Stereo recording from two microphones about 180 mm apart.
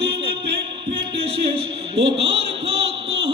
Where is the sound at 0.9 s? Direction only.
30° right (ahead or behind).